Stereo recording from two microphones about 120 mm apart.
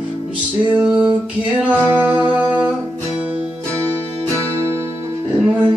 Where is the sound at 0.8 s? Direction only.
10° right (ahead or behind).